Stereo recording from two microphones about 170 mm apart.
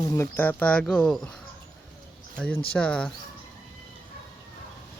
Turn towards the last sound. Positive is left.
turn(degrees=5)  # may be behind; listen again after turning